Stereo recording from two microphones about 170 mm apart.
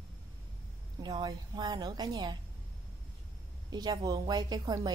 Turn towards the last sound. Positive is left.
turn(degrees=-25)  # may be behind; listen again after turning